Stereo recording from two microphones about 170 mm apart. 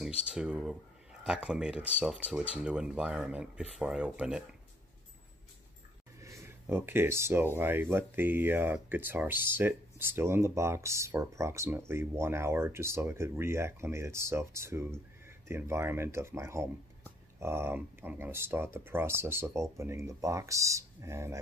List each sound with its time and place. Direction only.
0.3 s speech: 5° right (ahead or behind)
6.2 s speech: 15° right (ahead or behind)